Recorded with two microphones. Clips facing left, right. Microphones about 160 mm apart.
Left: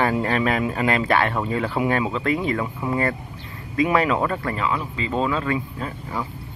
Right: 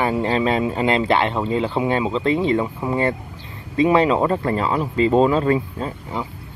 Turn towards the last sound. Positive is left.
turn(degrees=-25)  # may be behind; listen again after turning